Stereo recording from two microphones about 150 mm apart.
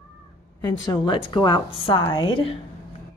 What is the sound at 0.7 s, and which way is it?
A woman's voice, 30° left (ahead or behind).